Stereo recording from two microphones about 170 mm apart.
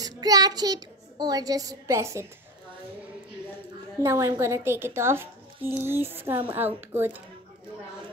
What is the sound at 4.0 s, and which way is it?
A woman's voice, 15° right (ahead or behind).